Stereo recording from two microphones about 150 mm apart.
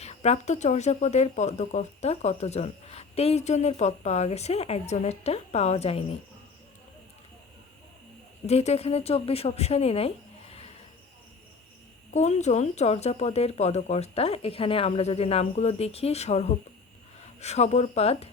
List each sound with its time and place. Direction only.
0.0 s speech: 45° left (ahead or behind)
8.4 s speech: 45° left (ahead or behind)
12.1 s speech: 50° left (ahead or behind)